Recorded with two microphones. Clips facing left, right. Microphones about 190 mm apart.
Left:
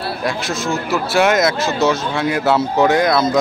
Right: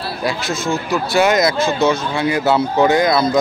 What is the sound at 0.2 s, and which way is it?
Speech, centre (ahead or behind).